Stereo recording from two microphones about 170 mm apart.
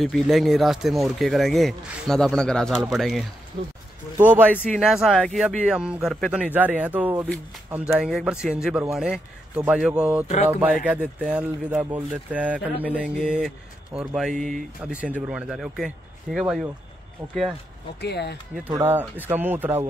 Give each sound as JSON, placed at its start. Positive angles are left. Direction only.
{"t": 0.0, "sound": "speech", "side_deg": 0}
{"t": 4.2, "sound": "speech", "side_deg": -10}
{"t": 18.0, "sound": "speech", "side_deg": 80}
{"t": 18.7, "sound": "speech", "side_deg": -15}